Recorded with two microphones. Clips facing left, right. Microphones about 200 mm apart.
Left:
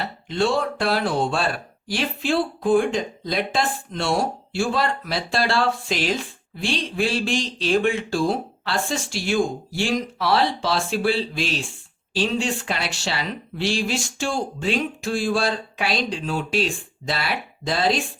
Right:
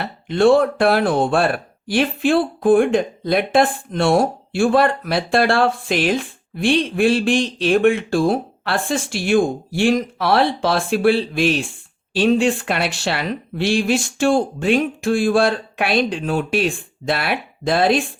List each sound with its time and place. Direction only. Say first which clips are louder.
0.3 s speech: right 9 dB; 55° right (ahead or behind)